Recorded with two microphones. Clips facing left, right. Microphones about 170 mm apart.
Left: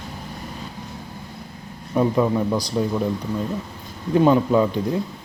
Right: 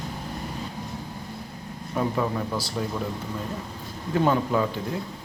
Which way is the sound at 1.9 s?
15° left (ahead or behind).